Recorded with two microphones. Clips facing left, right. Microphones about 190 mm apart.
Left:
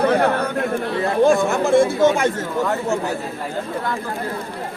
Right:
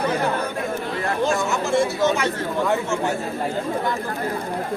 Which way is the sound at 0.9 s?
55° left (ahead or behind).